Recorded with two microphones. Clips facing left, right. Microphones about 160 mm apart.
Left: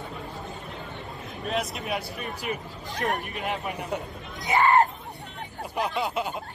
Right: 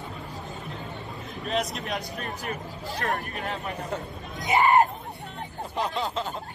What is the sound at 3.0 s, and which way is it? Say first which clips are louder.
Speech: left 2 dB; 20° left (ahead or behind).